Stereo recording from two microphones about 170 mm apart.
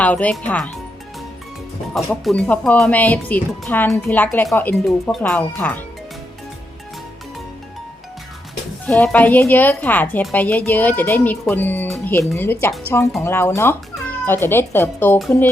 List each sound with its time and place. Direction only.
0.0 s a woman's voice: 10° left (ahead or behind)
1.9 s a woman's voice: 5° left (ahead or behind)
8.9 s a woman's voice: 5° left (ahead or behind)